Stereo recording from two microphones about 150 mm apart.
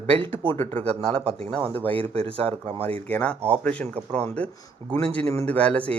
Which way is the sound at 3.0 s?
10° left (ahead or behind).